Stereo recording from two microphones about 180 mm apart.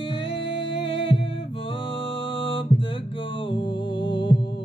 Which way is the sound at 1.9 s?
30° left (ahead or behind).